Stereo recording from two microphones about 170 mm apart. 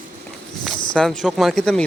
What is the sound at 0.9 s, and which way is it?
Speech, 5° left (ahead or behind).